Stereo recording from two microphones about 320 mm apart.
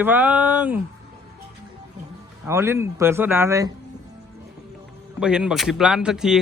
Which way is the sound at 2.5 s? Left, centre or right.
Centre.